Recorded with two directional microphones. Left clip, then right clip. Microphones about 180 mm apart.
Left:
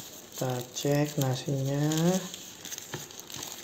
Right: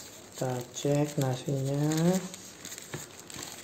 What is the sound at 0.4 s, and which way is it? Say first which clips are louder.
Speech: left 1 dB; 5° right (ahead or behind).